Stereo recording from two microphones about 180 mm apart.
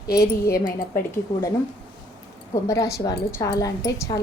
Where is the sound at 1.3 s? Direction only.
25° left (ahead or behind).